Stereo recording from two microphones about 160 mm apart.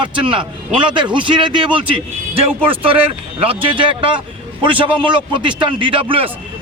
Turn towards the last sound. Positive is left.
turn(degrees=-35)  # may be behind; listen again after turning